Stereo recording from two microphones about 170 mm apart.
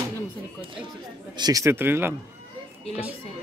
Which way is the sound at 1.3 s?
25° right (ahead or behind).